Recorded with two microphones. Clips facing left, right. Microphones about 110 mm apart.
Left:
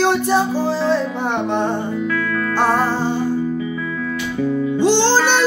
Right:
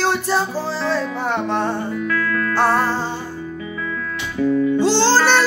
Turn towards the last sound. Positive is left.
turn(degrees=15)  # may be behind; listen again after turning